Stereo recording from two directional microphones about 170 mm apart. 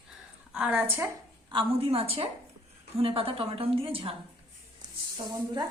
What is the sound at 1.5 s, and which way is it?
A woman's voice, 30° right (ahead or behind).